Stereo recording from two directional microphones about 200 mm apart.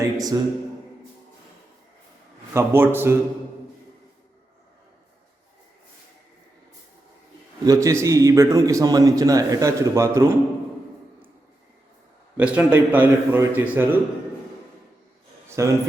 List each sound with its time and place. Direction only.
0.0 s a man's voice: 20° right (ahead or behind)
2.5 s a man's voice: 10° right (ahead or behind)
7.6 s a man's voice: 15° right (ahead or behind)
12.4 s a man's voice: 5° right (ahead or behind)
15.4 s speech: 15° right (ahead or behind)